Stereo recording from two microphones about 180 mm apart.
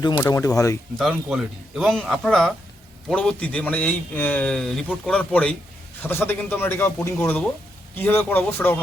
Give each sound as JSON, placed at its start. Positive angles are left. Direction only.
{"t": 0.0, "sound": "a man's voice", "side_deg": 20}
{"t": 0.9, "sound": "a man's voice", "side_deg": 0}